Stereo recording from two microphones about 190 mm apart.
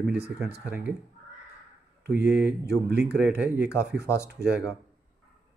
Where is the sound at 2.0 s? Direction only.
60° right (ahead or behind).